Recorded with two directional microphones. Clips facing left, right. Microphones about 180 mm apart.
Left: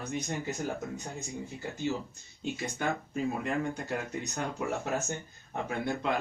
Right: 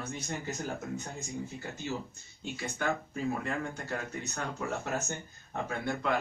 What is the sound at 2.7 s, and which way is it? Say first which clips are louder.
Speech: right 1 dB; 15° left (ahead or behind).